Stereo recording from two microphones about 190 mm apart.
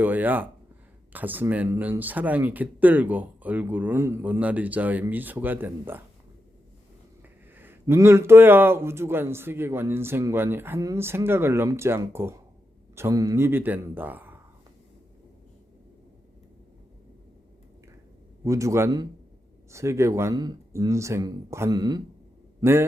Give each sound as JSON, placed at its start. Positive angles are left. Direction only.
{"t": 0.0, "sound": "speech", "side_deg": -10}
{"t": 7.5, "sound": "speech", "side_deg": -10}
{"t": 18.4, "sound": "speech", "side_deg": -15}